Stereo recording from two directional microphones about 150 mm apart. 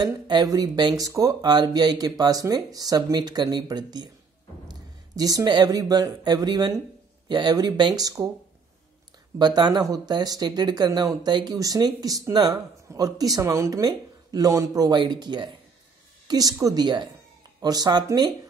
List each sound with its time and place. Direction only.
0.0 s speech: 25° right (ahead or behind)
9.4 s a woman's voice: 30° right (ahead or behind)